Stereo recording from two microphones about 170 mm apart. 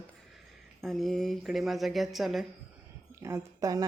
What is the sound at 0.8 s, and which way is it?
Speech, centre (ahead or behind).